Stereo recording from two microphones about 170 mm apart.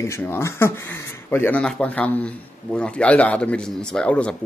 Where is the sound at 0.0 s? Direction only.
15° left (ahead or behind).